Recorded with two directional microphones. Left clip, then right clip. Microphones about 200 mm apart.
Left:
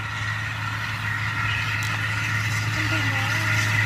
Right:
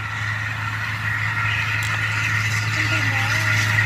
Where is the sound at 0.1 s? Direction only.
55° left (ahead or behind).